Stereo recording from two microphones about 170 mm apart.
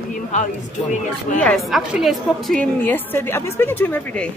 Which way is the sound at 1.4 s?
5° left (ahead or behind).